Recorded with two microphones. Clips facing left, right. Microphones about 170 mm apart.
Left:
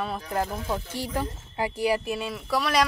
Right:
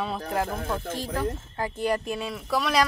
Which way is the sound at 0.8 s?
60° right (ahead or behind).